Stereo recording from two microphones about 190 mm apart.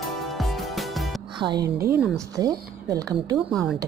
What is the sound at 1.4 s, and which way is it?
A woman's voice, 20° right (ahead or behind).